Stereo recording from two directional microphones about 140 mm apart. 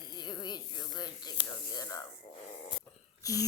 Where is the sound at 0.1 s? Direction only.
30° left (ahead or behind).